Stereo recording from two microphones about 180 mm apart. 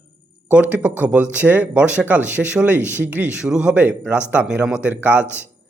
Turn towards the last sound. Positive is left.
turn(degrees=-10)  # may be behind; listen again after turning